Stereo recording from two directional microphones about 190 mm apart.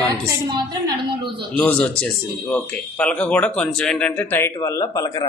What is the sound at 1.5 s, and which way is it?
Speech, 5° left (ahead or behind).